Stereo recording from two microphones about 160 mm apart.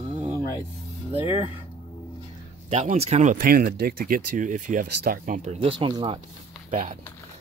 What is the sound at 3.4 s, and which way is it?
Speech, 70° right (ahead or behind).